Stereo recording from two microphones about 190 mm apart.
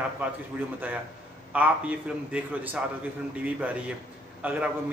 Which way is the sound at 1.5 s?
5° right (ahead or behind).